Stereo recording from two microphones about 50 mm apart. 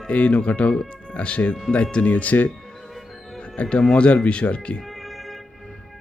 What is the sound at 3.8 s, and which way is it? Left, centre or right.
Speech, centre.